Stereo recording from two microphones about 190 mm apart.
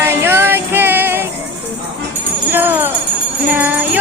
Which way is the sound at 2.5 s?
10° right (ahead or behind).